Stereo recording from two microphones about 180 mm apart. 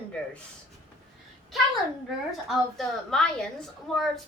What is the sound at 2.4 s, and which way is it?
A woman's voice, centre (ahead or behind).